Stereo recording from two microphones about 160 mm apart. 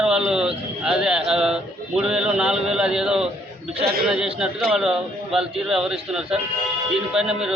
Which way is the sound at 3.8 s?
75° right (ahead or behind).